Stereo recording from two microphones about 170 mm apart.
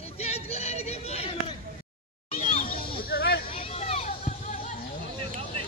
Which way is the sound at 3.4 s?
35° left (ahead or behind).